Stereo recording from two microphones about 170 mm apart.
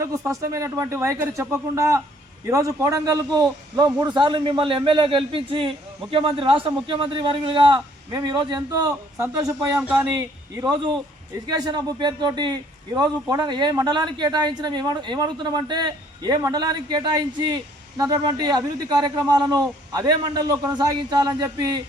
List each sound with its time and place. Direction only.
0.0 s a man's voice: 20° right (ahead or behind)